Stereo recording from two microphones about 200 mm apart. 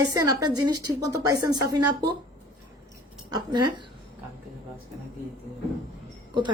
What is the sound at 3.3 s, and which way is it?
Speech, 20° right (ahead or behind).